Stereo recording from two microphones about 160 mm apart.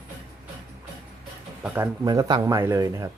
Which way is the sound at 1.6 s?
10° right (ahead or behind).